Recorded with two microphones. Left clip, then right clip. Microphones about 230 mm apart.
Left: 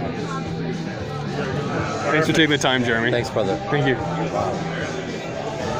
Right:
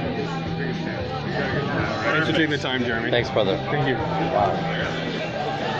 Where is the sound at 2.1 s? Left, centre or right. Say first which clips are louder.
Left 6 dB; left.